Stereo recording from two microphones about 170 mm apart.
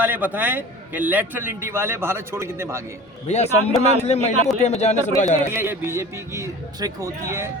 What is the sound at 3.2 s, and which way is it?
Speech, 40° left (ahead or behind).